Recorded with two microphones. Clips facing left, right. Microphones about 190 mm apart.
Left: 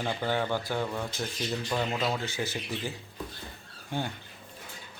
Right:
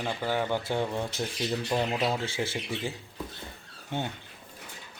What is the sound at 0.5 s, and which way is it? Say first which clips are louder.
Speech: right 2 dB; 25° right (ahead or behind).